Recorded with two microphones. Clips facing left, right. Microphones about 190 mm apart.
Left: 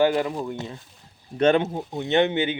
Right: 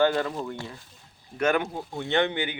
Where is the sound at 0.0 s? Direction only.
15° left (ahead or behind).